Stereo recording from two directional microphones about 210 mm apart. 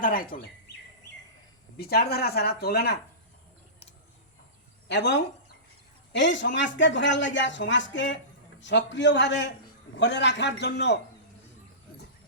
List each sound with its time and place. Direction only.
0.0 s speech: 40° left (ahead or behind)
1.8 s speech: 50° left (ahead or behind)
4.9 s speech: 55° left (ahead or behind)